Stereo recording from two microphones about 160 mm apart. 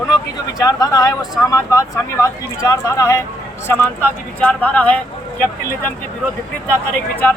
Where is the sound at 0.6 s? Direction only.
20° left (ahead or behind).